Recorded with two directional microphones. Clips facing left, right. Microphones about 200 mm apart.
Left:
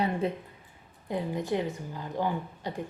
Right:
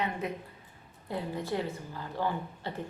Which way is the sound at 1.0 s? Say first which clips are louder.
Left 4 dB; 15° left (ahead or behind).